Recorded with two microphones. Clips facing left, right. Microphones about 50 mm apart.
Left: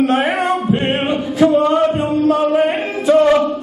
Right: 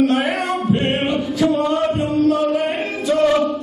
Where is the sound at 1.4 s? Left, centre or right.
Left.